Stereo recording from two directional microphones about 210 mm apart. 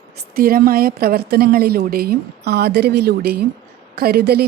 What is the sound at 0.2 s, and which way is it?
A woman's voice, 45° right (ahead or behind).